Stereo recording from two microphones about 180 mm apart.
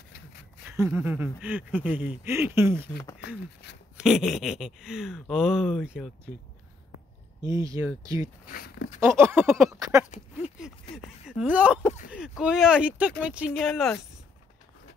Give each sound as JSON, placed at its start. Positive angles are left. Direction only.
{"t": 0.7, "sound": "speech", "side_deg": -10}
{"t": 3.9, "sound": "speech", "side_deg": -5}
{"t": 7.4, "sound": "speech", "side_deg": -20}
{"t": 8.5, "sound": "speech", "side_deg": 60}
{"t": 9.0, "sound": "speech", "side_deg": -15}
{"t": 10.4, "sound": "speech", "side_deg": -5}